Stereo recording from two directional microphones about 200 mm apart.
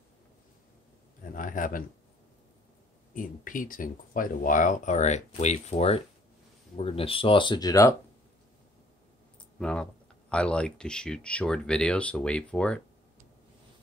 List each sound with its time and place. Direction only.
1.3 s speech: 40° left (ahead or behind)
3.2 s speech: 40° left (ahead or behind); by 7.9 s 15° left (ahead or behind)
9.6 s speech: 5° left (ahead or behind)